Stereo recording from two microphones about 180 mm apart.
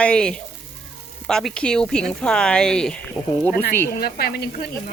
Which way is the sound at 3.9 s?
60° left (ahead or behind).